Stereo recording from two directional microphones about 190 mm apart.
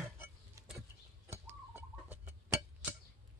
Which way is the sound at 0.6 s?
15° right (ahead or behind).